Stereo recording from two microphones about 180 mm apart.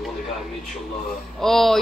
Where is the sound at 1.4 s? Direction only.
Centre (ahead or behind).